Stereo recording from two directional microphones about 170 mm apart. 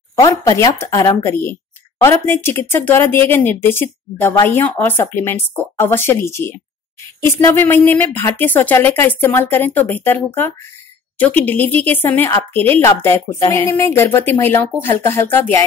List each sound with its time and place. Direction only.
0.3 s speech: 20° left (ahead or behind)